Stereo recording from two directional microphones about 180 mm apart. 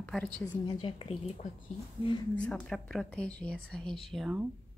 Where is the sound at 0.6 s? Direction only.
25° left (ahead or behind).